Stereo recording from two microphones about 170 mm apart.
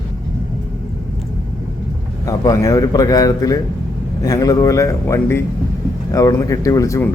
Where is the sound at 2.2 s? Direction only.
20° left (ahead or behind).